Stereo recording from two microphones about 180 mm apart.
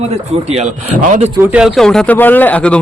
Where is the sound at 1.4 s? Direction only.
5° right (ahead or behind).